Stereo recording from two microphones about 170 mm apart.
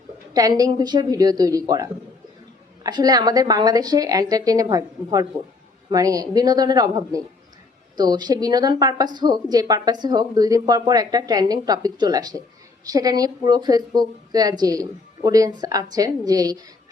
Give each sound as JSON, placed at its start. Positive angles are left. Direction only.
{"t": 0.3, "sound": "speech", "side_deg": -20}